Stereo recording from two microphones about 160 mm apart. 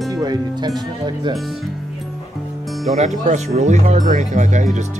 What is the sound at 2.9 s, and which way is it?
Speech, 45° right (ahead or behind).